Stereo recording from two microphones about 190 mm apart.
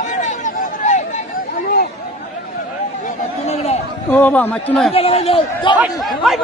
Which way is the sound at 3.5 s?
35° left (ahead or behind).